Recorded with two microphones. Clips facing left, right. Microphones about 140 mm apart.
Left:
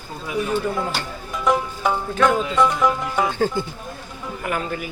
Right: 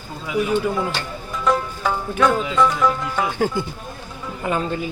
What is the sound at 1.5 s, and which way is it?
Music, 15° left (ahead or behind).